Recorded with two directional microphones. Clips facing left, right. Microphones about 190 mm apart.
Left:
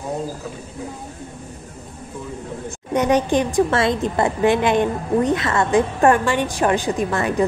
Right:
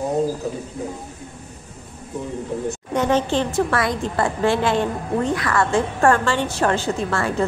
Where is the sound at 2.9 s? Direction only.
15° left (ahead or behind).